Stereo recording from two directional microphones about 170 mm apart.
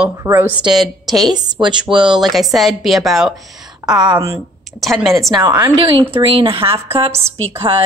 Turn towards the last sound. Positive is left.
turn(degrees=-15)  # may be behind; listen again after turning